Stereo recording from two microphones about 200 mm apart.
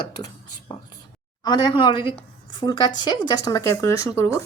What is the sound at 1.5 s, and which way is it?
A woman's voice, 20° left (ahead or behind).